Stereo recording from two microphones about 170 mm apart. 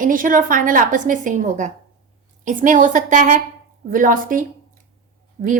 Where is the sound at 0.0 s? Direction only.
55° right (ahead or behind).